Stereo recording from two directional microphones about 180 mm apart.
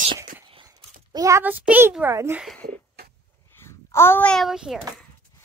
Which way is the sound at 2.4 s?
5° left (ahead or behind).